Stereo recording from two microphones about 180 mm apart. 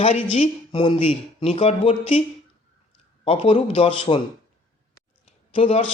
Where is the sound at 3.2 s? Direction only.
30° left (ahead or behind).